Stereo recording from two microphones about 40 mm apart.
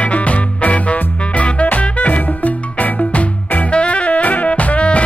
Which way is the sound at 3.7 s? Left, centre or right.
Left.